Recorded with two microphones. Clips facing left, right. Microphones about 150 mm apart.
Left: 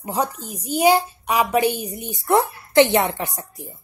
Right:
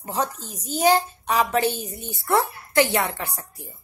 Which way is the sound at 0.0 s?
10° left (ahead or behind).